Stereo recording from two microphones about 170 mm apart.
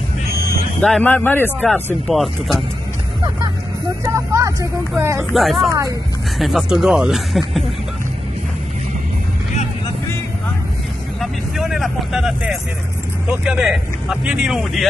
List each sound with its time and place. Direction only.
0.7 s a man's voice: 5° left (ahead or behind)
4.0 s speech: 15° right (ahead or behind)
5.3 s speech: centre (ahead or behind)
11.1 s vehicle: centre (ahead or behind)
13.3 s speech: 5° right (ahead or behind)